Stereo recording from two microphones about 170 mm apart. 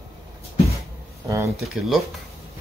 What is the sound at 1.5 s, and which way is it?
Speech, centre (ahead or behind).